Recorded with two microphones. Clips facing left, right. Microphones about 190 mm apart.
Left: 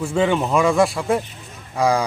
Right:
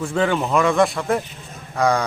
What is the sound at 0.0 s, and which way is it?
Speech, 10° left (ahead or behind).